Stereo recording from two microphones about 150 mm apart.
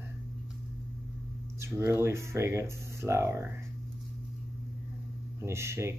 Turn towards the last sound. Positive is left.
turn(degrees=-20)  # may be behind; listen again after turning